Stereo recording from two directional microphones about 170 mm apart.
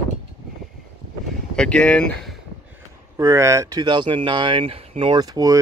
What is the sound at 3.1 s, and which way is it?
Speech, 15° right (ahead or behind).